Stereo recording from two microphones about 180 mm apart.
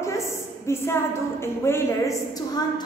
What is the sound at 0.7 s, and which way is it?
A woman's voice, 15° left (ahead or behind).